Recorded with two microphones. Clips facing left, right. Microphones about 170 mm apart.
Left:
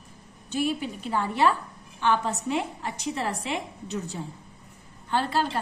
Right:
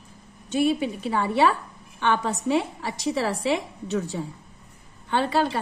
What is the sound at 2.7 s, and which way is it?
Speech, 90° right.